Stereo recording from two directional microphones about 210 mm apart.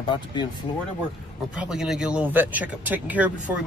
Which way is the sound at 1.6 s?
5° right (ahead or behind).